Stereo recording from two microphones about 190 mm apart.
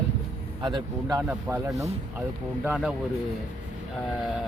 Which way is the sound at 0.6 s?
20° right (ahead or behind).